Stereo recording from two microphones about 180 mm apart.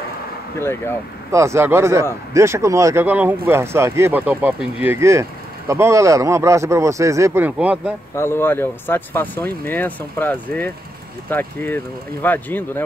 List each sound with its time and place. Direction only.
0.6 s speech: 15° left (ahead or behind)
1.3 s speech: 15° right (ahead or behind)
8.2 s speech: 15° left (ahead or behind)